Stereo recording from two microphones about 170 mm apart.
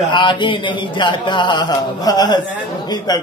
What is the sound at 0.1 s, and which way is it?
A man's voice, 30° left (ahead or behind).